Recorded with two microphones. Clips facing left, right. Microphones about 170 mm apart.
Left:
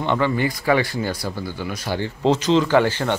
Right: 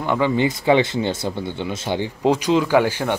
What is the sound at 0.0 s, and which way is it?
Speech, 10° right (ahead or behind).